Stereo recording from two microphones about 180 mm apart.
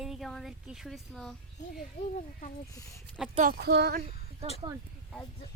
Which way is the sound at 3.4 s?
60° right (ahead or behind).